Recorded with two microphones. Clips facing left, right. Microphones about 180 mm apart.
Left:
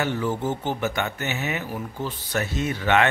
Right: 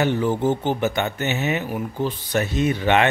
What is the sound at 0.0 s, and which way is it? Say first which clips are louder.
A man's voice: right 5 dB; 20° right (ahead or behind).